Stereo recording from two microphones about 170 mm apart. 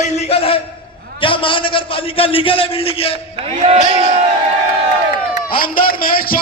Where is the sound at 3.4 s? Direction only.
35° right (ahead or behind).